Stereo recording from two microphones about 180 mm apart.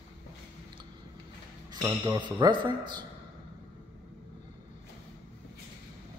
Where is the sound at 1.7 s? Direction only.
20° right (ahead or behind).